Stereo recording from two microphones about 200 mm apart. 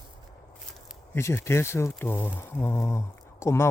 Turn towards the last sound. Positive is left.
turn(degrees=15)  # may be behind; listen again after turning